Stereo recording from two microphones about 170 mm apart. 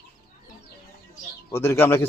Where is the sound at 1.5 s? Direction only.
15° left (ahead or behind).